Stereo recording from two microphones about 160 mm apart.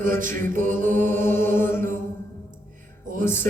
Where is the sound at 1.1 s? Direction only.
15° left (ahead or behind).